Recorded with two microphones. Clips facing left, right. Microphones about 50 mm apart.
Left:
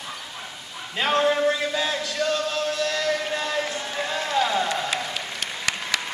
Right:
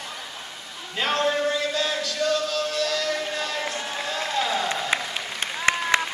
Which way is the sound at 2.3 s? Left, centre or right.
Left.